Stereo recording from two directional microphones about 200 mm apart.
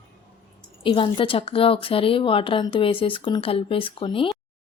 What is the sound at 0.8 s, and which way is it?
A woman's voice, 25° left (ahead or behind).